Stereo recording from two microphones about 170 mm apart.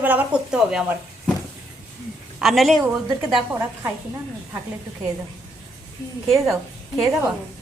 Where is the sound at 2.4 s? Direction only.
Centre (ahead or behind).